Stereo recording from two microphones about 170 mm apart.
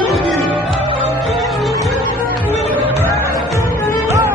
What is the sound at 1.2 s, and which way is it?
Music, centre (ahead or behind).